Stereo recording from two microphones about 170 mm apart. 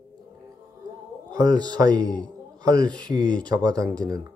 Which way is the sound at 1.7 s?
20° right (ahead or behind).